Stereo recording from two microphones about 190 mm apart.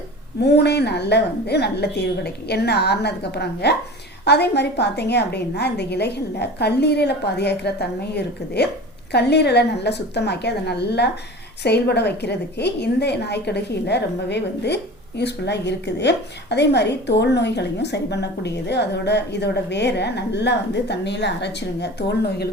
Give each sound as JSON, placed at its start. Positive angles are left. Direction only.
{"t": 0.4, "sound": "a woman's voice", "side_deg": 60}